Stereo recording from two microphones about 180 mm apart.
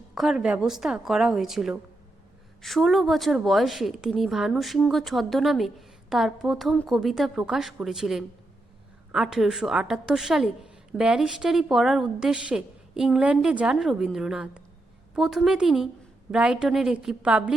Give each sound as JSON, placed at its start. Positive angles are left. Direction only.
{"t": 0.1, "sound": "a woman's voice", "side_deg": 0}